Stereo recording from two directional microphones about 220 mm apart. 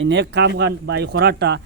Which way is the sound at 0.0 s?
55° right (ahead or behind).